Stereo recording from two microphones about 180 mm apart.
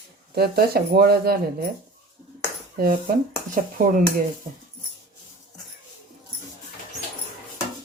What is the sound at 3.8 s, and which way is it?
Speech, 50° right (ahead or behind).